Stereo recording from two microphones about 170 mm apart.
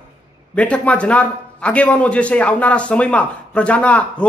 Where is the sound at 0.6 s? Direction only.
5° left (ahead or behind).